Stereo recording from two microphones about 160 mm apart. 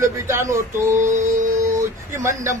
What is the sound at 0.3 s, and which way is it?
Speech, 15° right (ahead or behind).